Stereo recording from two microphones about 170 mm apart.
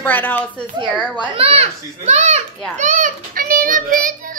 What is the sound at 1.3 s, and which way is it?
A child's voice, 35° right (ahead or behind).